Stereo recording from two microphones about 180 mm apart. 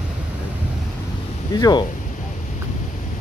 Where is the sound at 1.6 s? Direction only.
25° left (ahead or behind).